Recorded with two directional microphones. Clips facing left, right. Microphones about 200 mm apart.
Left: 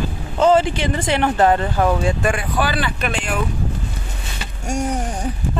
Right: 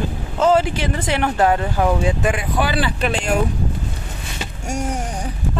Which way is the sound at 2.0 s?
15° right (ahead or behind).